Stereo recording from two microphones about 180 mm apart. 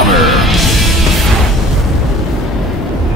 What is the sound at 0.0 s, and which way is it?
Music, centre (ahead or behind).